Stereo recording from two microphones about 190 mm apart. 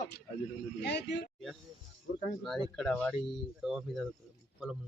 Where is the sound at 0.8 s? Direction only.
65° left (ahead or behind).